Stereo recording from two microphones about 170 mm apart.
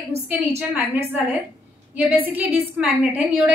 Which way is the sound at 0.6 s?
15° right (ahead or behind).